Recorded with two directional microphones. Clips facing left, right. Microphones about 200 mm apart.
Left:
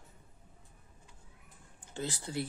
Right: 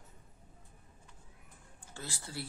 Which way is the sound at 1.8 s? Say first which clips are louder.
Left 8 dB; 20° left (ahead or behind).